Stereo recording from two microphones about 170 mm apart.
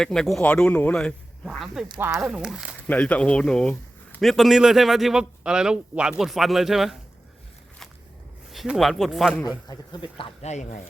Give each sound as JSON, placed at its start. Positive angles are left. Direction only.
{"t": 0.0, "sound": "a man's voice", "side_deg": 5}
{"t": 2.0, "sound": "speech", "side_deg": -15}
{"t": 2.2, "sound": "a man's voice", "side_deg": -5}
{"t": 2.8, "sound": "a man's voice", "side_deg": 10}
{"t": 8.5, "sound": "a man's voice", "side_deg": 0}
{"t": 9.6, "sound": "speech", "side_deg": 25}